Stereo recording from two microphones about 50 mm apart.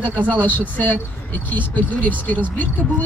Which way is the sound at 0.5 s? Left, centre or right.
Left.